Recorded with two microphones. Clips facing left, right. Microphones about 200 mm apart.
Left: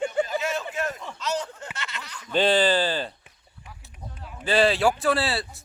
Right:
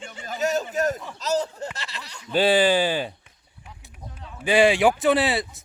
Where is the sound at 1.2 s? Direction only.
35° right (ahead or behind).